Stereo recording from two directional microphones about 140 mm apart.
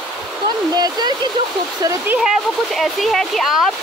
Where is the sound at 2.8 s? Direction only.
Centre (ahead or behind).